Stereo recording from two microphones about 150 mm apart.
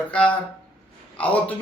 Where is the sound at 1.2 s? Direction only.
10° left (ahead or behind).